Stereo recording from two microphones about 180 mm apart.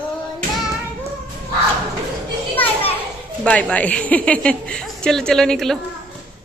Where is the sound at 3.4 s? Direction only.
5° left (ahead or behind).